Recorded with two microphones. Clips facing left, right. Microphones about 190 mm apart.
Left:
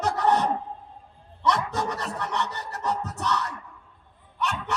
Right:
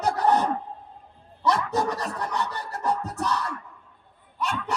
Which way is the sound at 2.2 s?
30° right (ahead or behind).